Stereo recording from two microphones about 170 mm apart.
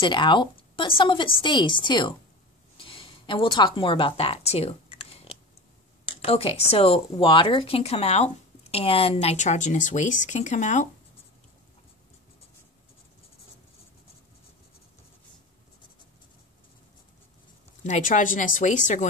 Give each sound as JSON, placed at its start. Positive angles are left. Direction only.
{"t": 0.0, "sound": "speech", "side_deg": 25}
{"t": 2.8, "sound": "a sound", "side_deg": 30}
{"t": 6.0, "sound": "speech", "side_deg": 35}
{"t": 17.8, "sound": "speech", "side_deg": 45}